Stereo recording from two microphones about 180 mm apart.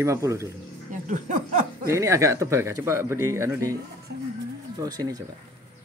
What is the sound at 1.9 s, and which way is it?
Speech, 15° right (ahead or behind).